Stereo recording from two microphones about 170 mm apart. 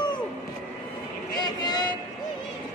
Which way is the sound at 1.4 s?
25° left (ahead or behind).